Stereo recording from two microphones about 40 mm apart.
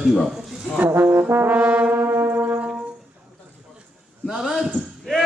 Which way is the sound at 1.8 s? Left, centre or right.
Right.